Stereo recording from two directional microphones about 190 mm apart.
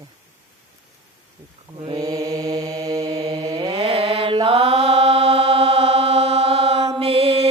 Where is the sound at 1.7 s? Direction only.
25° right (ahead or behind).